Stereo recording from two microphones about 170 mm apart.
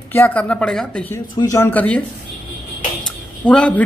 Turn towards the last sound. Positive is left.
turn(degrees=5)  # may be behind; listen again after turning